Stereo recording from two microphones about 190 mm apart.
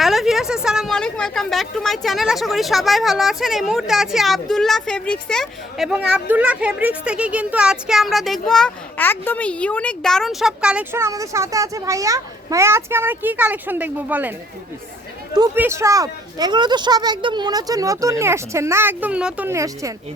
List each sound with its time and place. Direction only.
0.0 s a woman's voice: centre (ahead or behind)
15.5 s speech: 15° right (ahead or behind)